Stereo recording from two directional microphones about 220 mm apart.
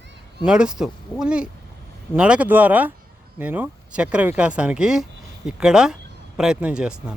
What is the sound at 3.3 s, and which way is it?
Speech, 10° right (ahead or behind).